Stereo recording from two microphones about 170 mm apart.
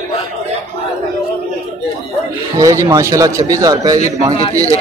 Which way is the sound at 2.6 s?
20° right (ahead or behind).